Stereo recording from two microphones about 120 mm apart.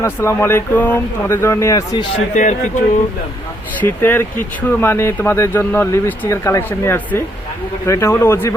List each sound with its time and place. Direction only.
0.0 s speech: 20° left (ahead or behind)
2.3 s speech: 90° left
3.8 s speech: 15° left (ahead or behind)